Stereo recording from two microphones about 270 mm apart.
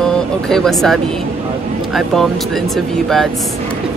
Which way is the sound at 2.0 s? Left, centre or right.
Centre.